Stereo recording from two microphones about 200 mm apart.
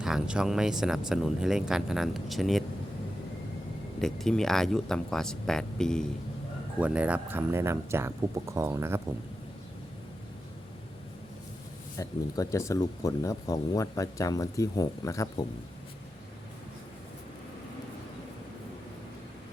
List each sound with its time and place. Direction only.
0.0 s speech: 5° right (ahead or behind)
4.0 s speech: centre (ahead or behind)
11.9 s speech: 15° left (ahead or behind)